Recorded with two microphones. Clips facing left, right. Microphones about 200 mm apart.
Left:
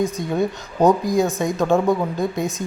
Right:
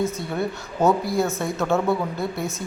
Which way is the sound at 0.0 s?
15° left (ahead or behind).